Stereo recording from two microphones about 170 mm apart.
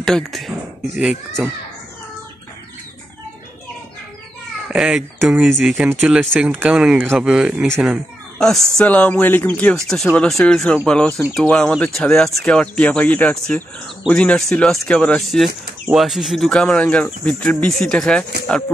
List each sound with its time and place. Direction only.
0.0 s a sound: centre (ahead or behind)
0.9 s speech: centre (ahead or behind)
4.6 s speech: centre (ahead or behind)
7.8 s speech: centre (ahead or behind)